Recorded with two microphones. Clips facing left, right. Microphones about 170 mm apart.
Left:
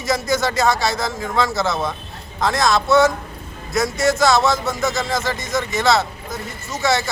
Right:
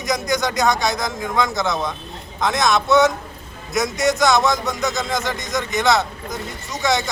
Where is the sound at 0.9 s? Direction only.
15° right (ahead or behind).